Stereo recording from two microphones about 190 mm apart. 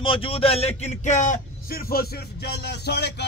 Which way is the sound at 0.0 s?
30° left (ahead or behind).